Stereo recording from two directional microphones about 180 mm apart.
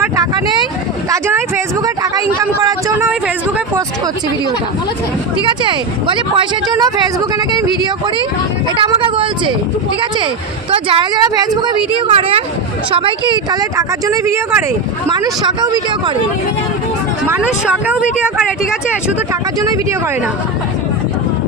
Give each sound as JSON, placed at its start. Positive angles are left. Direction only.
{"t": 1.1, "sound": "a sound", "side_deg": -15}
{"t": 5.4, "sound": "speech", "side_deg": -25}
{"t": 8.8, "sound": "speech", "side_deg": -25}
{"t": 10.8, "sound": "speech", "side_deg": -25}
{"t": 17.2, "sound": "speech", "side_deg": -10}